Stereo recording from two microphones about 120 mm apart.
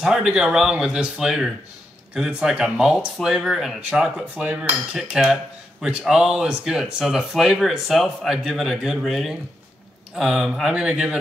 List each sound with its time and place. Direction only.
0.0 s speech: 5° right (ahead or behind)